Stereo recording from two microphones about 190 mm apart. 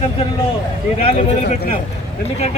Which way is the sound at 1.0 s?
40° left (ahead or behind).